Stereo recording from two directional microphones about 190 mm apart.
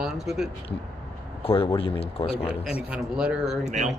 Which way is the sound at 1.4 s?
30° left (ahead or behind).